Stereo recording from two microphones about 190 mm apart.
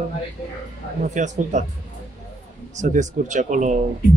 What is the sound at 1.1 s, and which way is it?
Speech, 40° right (ahead or behind).